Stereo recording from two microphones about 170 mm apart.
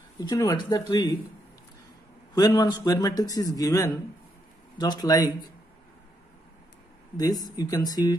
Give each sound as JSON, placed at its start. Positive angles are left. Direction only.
{"t": 0.2, "sound": "a man's voice", "side_deg": 20}
{"t": 2.3, "sound": "a man's voice", "side_deg": 20}
{"t": 7.2, "sound": "a man's voice", "side_deg": 20}